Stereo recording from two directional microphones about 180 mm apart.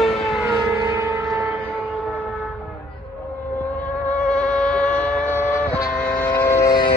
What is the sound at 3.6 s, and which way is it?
Vehicle, 10° left (ahead or behind).